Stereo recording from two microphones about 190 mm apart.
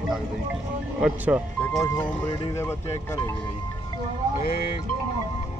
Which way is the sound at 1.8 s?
15° left (ahead or behind).